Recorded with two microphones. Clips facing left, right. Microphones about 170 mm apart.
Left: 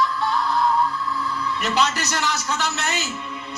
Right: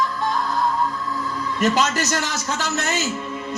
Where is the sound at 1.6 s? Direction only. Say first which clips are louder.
Right 4 dB; 40° right (ahead or behind).